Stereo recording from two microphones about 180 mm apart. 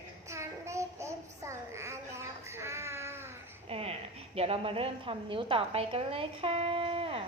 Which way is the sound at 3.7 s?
35° right (ahead or behind).